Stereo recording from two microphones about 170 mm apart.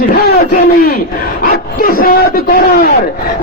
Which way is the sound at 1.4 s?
60° left (ahead or behind).